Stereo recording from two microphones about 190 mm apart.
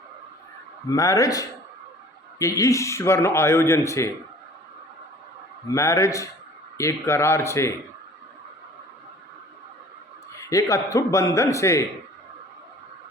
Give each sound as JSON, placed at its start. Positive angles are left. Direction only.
{"t": 0.9, "sound": "a man's voice", "side_deg": 15}
{"t": 5.6, "sound": "a man's voice", "side_deg": 15}
{"t": 10.3, "sound": "a man's voice", "side_deg": 15}